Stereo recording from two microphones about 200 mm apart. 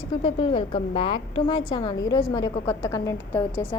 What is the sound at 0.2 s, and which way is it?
A woman's voice, 25° left (ahead or behind).